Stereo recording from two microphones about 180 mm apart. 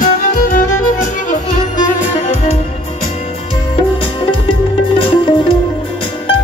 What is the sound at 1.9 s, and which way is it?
Music, 40° left (ahead or behind).